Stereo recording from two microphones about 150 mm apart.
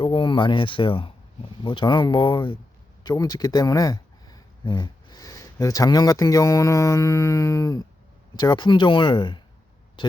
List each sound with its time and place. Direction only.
0.0 s speech: 35° left (ahead or behind)